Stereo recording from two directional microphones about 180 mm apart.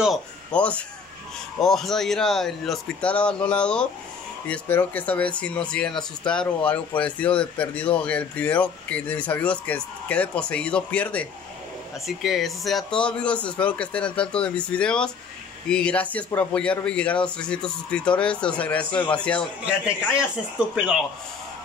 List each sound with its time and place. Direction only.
0.0 s speech: 5° left (ahead or behind)
19.6 s speech: 5° right (ahead or behind)